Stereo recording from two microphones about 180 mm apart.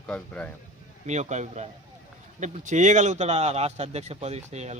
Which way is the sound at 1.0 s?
40° right (ahead or behind).